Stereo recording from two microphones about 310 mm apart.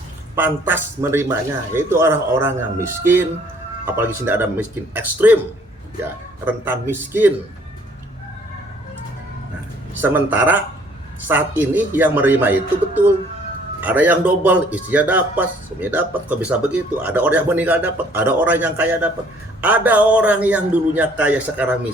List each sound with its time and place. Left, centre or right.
0.3 s speech: centre
6.4 s speech: centre
9.9 s speech: centre